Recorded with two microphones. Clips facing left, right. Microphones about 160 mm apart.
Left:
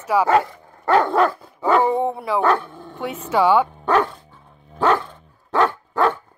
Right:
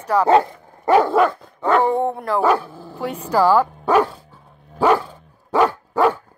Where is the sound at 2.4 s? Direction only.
5° right (ahead or behind).